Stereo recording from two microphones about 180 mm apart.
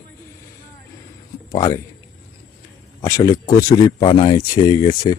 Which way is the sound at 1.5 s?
25° left (ahead or behind).